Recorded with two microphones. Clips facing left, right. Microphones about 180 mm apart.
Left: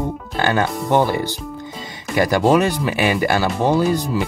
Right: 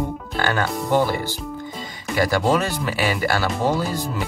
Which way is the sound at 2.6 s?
20° left (ahead or behind).